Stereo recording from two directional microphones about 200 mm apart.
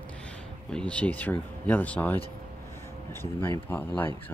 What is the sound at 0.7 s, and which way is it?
Speech, 5° left (ahead or behind).